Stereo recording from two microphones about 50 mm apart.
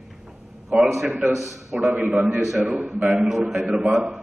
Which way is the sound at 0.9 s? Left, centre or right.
Centre.